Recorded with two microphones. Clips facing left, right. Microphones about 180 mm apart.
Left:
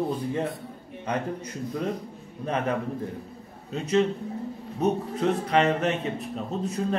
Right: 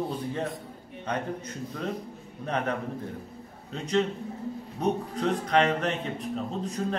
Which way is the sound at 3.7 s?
5° left (ahead or behind).